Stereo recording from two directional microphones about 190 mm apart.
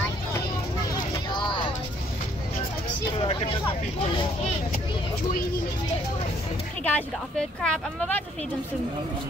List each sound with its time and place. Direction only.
0.9 s vehicle: 20° left (ahead or behind)
3.2 s vehicle: 25° left (ahead or behind)
6.8 s speech: 10° left (ahead or behind)